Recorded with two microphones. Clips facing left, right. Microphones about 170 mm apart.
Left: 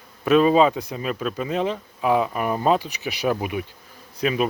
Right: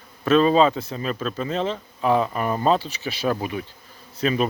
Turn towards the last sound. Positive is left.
turn(degrees=5)  # may be behind; listen again after turning